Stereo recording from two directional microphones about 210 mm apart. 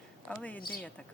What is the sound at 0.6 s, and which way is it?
Speech, 45° left (ahead or behind).